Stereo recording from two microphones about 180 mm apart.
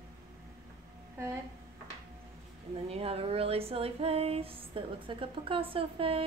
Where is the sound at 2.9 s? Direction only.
35° right (ahead or behind).